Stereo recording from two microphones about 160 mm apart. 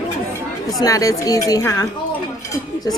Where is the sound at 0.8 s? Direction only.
20° left (ahead or behind).